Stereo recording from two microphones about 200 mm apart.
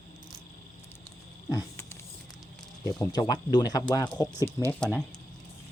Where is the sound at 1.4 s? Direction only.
15° left (ahead or behind).